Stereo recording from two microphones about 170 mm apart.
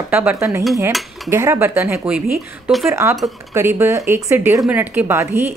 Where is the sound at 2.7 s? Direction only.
Centre (ahead or behind).